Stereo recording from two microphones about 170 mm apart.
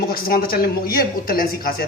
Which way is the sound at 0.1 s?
60° left (ahead or behind).